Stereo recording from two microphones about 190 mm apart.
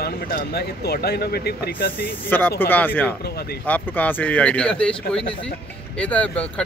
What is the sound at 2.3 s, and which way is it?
Speech, 10° left (ahead or behind).